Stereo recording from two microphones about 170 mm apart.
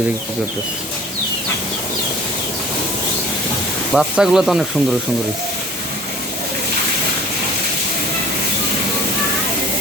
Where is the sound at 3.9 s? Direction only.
5° right (ahead or behind).